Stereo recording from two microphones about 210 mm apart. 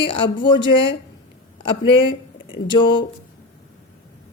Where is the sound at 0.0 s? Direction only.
25° left (ahead or behind).